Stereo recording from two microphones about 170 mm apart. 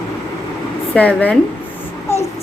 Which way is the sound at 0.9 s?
10° left (ahead or behind).